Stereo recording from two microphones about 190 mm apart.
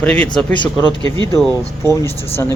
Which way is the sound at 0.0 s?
5° left (ahead or behind).